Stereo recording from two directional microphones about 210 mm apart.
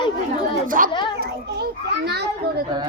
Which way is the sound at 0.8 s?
40° right (ahead or behind).